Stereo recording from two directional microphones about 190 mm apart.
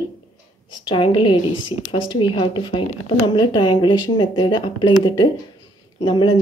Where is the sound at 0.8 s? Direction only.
25° left (ahead or behind).